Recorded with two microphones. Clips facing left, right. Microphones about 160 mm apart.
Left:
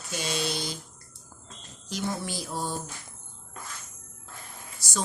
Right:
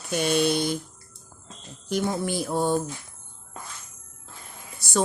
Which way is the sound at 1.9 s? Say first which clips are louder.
Right 6 dB; 55° right (ahead or behind).